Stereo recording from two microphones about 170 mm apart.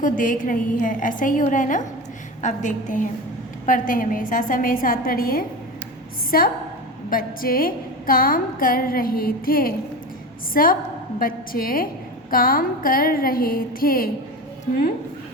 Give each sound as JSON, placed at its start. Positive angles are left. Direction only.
{"t": 0.0, "sound": "a woman's voice", "side_deg": 50}